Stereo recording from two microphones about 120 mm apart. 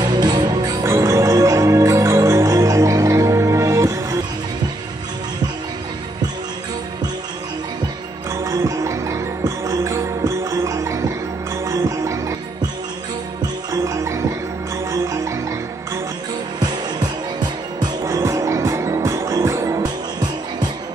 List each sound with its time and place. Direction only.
0.0 s music: 35° right (ahead or behind)
8.5 s music: 25° right (ahead or behind)
13.7 s music: 25° right (ahead or behind)
16.5 s music: 35° right (ahead or behind)